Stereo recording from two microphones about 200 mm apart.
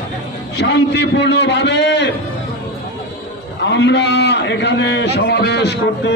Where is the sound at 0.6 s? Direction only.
60° left (ahead or behind).